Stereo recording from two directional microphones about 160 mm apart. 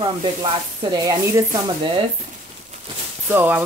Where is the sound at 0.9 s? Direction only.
20° right (ahead or behind).